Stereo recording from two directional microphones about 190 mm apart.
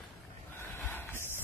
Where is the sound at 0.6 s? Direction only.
15° left (ahead or behind).